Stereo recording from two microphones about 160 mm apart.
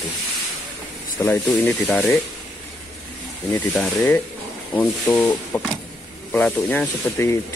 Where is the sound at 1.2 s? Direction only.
15° left (ahead or behind).